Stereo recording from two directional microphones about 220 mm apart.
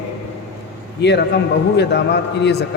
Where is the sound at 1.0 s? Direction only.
50° left (ahead or behind).